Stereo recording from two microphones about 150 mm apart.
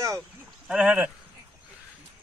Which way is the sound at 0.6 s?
10° right (ahead or behind).